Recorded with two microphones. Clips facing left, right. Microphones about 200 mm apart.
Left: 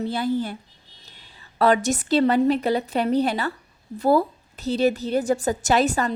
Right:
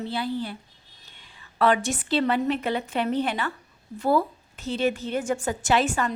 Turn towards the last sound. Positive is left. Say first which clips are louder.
# left 3 dB
turn(degrees=40)  # may be behind; listen again after turning